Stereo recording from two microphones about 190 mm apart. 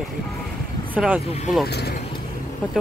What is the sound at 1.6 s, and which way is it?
Speech, 60° left (ahead or behind).